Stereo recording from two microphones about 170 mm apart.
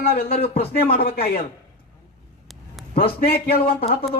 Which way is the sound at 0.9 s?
60° left (ahead or behind).